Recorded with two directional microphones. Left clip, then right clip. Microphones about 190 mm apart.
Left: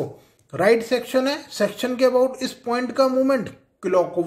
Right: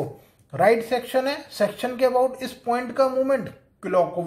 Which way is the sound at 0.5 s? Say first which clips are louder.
Left 1 dB; 25° left (ahead or behind).